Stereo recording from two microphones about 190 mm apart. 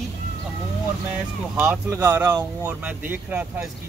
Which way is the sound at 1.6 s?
10° right (ahead or behind).